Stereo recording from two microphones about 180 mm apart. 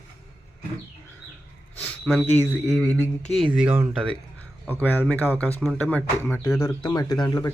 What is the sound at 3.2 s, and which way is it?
Speech, 35° left (ahead or behind).